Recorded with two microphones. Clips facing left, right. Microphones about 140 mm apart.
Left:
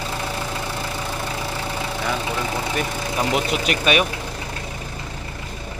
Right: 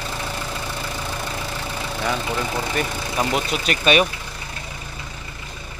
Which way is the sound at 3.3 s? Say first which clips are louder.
Left 2 dB; 15° left (ahead or behind).